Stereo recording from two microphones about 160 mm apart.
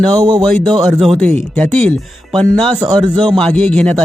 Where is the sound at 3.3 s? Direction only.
5° left (ahead or behind).